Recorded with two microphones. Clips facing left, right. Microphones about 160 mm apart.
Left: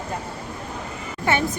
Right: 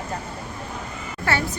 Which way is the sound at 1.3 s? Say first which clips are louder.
Left 2 dB; 20° left (ahead or behind).